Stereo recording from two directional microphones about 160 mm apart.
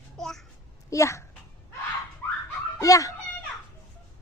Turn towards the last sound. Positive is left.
turn(degrees=20)  # may be behind; listen again after turning